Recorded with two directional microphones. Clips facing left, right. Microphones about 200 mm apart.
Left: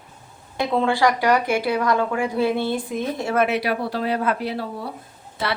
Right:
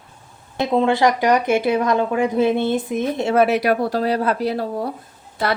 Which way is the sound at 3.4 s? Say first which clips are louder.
Right 5 dB; 45° right (ahead or behind).